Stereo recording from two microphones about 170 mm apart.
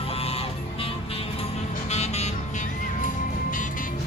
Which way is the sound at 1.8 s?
40° left (ahead or behind).